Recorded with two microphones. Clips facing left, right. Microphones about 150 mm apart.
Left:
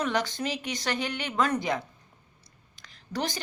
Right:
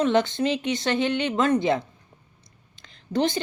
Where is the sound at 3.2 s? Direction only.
25° right (ahead or behind).